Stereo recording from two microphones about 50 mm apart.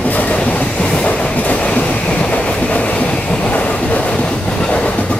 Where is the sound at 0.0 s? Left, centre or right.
Left.